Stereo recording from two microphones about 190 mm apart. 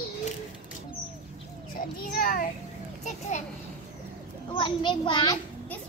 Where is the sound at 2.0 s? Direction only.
50° left (ahead or behind).